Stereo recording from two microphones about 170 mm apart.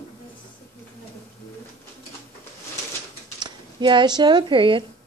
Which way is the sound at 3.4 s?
25° right (ahead or behind).